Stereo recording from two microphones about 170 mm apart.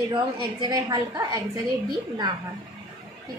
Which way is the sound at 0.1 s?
25° right (ahead or behind).